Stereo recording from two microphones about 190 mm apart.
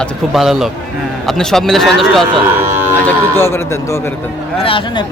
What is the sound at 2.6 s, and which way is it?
Speech, 10° right (ahead or behind).